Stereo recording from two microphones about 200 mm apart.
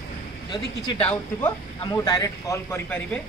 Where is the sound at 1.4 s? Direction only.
20° left (ahead or behind).